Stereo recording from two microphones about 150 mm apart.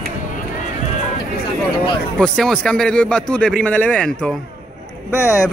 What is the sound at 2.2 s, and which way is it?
Speech, 5° left (ahead or behind).